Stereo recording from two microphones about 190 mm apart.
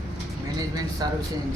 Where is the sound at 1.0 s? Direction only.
20° right (ahead or behind).